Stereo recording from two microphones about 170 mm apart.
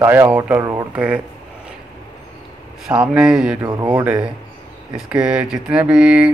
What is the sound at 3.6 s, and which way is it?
Speech, 25° right (ahead or behind).